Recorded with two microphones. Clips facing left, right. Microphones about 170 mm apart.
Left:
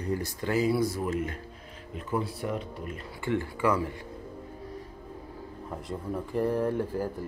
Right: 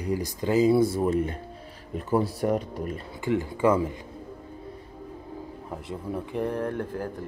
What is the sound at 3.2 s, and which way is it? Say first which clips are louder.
Speech: right 4 dB; 15° right (ahead or behind).